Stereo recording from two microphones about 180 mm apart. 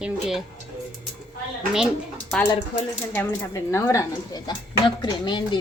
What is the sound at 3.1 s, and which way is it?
Speech, 15° left (ahead or behind).